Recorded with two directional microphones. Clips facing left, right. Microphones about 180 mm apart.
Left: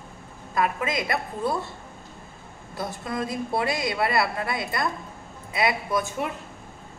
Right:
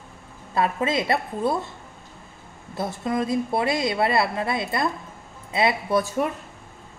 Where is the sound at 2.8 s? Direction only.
20° right (ahead or behind).